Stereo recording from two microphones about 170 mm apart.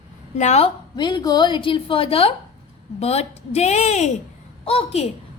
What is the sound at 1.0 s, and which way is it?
A woman's voice, 25° left (ahead or behind).